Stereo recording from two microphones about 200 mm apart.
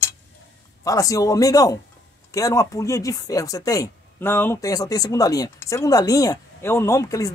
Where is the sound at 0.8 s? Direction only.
15° left (ahead or behind).